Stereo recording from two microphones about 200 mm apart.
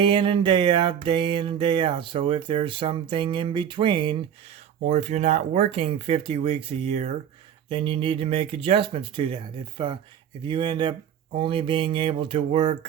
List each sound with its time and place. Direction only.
0.0 s music: 25° right (ahead or behind)